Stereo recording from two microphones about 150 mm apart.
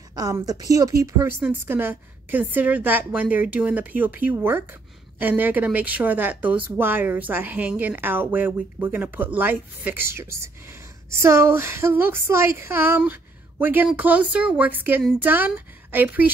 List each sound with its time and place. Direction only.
0.1 s a woman's voice: 25° right (ahead or behind)